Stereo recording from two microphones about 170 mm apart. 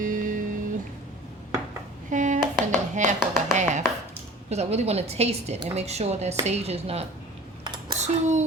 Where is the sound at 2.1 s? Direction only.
45° right (ahead or behind).